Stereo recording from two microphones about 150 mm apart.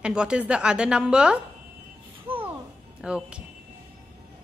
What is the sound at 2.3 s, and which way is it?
Music, 40° right (ahead or behind).